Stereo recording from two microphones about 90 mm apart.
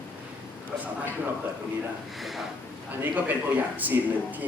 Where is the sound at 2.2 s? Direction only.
Centre (ahead or behind).